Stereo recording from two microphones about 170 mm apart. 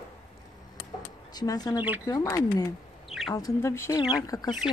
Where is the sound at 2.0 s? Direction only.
20° left (ahead or behind).